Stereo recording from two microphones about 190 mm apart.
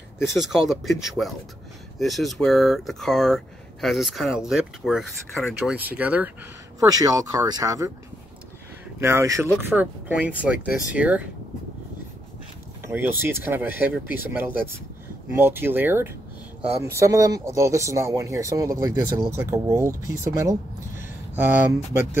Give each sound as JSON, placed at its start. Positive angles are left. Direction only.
{"t": 0.4, "sound": "speech", "side_deg": 0}
{"t": 6.8, "sound": "speech", "side_deg": -20}
{"t": 9.0, "sound": "speech", "side_deg": -15}
{"t": 12.8, "sound": "speech", "side_deg": -10}